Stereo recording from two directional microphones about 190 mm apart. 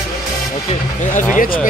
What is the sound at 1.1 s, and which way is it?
Speech, 45° left (ahead or behind).